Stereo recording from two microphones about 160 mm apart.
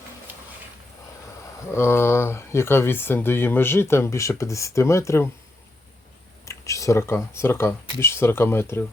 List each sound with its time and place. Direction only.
0.3 s a sound: 10° right (ahead or behind)
1.7 s speech: 15° left (ahead or behind)
6.4 s speech: 20° left (ahead or behind)